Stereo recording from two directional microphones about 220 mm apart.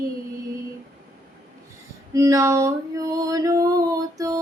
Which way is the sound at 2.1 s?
15° right (ahead or behind).